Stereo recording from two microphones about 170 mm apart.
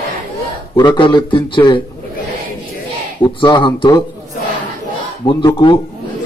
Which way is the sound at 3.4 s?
25° left (ahead or behind).